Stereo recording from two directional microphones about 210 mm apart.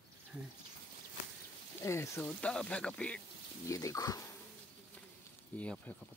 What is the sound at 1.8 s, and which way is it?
Speech, 15° left (ahead or behind).